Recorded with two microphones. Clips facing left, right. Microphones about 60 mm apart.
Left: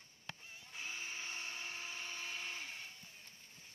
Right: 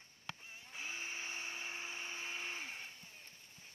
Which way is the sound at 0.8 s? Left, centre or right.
Centre.